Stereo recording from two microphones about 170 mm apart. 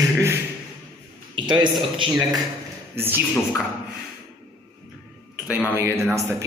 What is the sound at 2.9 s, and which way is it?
Speech, 10° right (ahead or behind).